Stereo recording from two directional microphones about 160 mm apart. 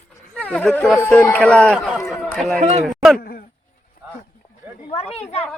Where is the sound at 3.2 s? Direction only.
65° left (ahead or behind).